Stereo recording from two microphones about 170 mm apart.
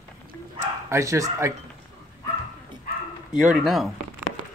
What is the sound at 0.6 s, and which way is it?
Bow-wow, 15° right (ahead or behind).